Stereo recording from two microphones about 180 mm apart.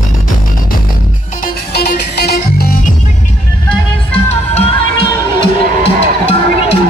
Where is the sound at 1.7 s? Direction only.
60° left (ahead or behind).